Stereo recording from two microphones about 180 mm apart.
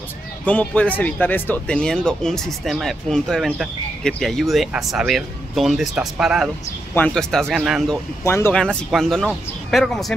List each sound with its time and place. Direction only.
0.5 s speech: 10° left (ahead or behind)
8.2 s speech: 15° left (ahead or behind)